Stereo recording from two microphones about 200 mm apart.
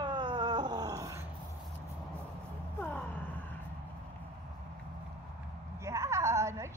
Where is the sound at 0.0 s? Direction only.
20° right (ahead or behind).